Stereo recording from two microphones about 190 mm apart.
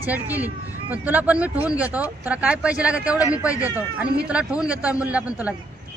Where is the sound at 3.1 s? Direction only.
15° left (ahead or behind).